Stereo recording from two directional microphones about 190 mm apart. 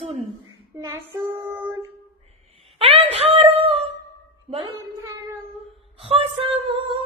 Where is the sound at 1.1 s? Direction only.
10° right (ahead or behind).